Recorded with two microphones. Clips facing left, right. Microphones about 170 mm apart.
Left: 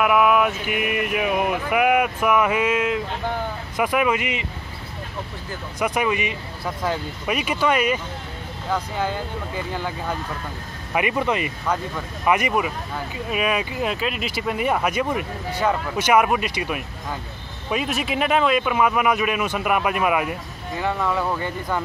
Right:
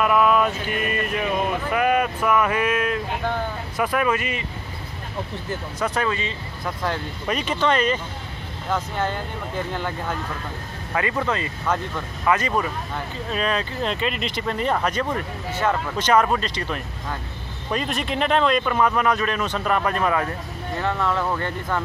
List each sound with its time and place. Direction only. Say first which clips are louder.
0.0 s speech: left 1 dB; 10° left (ahead or behind)
5.8 s speech: left 3 dB; 15° left (ahead or behind)